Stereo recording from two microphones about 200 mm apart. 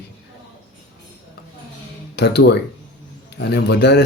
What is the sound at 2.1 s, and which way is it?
A man's voice, 55° left (ahead or behind).